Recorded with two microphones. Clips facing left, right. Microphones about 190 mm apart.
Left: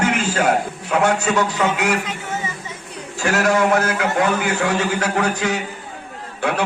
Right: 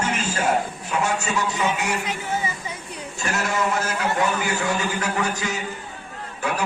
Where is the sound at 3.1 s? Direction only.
70° left (ahead or behind).